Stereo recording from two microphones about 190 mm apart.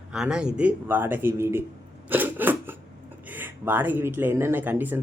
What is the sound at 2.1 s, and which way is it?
Cough, 10° right (ahead or behind).